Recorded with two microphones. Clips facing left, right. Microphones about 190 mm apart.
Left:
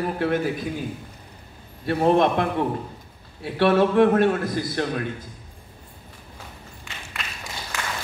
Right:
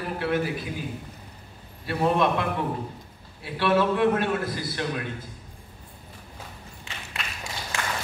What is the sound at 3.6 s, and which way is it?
A man's voice, 50° left (ahead or behind).